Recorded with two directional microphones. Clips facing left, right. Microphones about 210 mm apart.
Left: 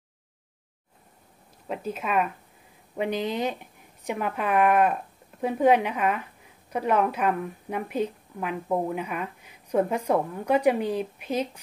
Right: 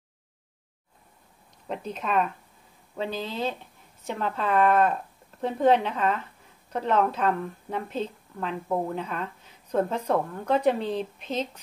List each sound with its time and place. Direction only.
1.7 s a woman's voice: 5° left (ahead or behind)